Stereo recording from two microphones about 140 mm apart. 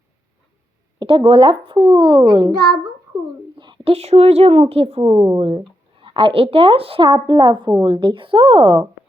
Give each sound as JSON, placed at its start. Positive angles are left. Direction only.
{"t": 0.9, "sound": "a child's voice", "side_deg": -35}
{"t": 3.6, "sound": "a sound", "side_deg": -35}
{"t": 3.9, "sound": "speech", "side_deg": -50}
{"t": 5.0, "sound": "speech", "side_deg": -25}
{"t": 6.0, "sound": "a child's voice", "side_deg": -40}
{"t": 7.1, "sound": "a child's voice", "side_deg": -30}